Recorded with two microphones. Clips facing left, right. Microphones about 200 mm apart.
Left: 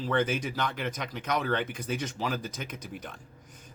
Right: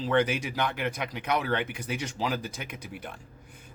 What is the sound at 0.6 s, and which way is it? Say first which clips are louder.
Speech: right 2 dB; 60° right (ahead or behind).